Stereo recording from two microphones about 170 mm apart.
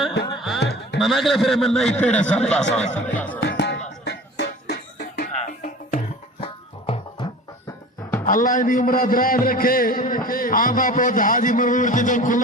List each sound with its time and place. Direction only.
0.3 s music: centre (ahead or behind)
0.6 s music: 75° left (ahead or behind)
0.9 s a man's voice: centre (ahead or behind)
2.9 s music: 10° left (ahead or behind)
3.4 s music: 90° left; by 5.3 s 70° left (ahead or behind)
6.4 s music: 35° left (ahead or behind)
8.2 s a man's voice: 50° left (ahead or behind)